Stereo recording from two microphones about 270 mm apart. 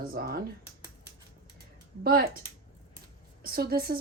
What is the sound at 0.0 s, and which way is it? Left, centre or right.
Speech, right.